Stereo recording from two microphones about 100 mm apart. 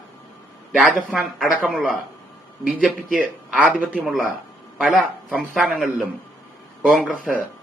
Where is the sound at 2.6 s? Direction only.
10° right (ahead or behind).